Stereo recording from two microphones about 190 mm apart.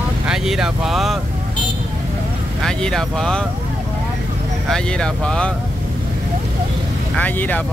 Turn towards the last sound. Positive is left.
turn(degrees=10)  # may be behind; listen again after turning